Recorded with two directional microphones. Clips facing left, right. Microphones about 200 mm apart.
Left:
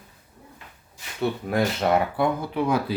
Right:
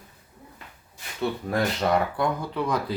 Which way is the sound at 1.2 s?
5° left (ahead or behind).